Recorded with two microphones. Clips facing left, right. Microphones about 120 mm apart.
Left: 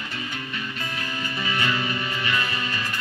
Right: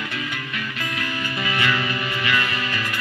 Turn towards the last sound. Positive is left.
turn(degrees=-70)  # may be behind; listen again after turning